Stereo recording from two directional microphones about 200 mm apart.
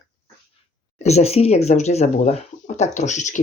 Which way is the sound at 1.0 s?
30° left (ahead or behind).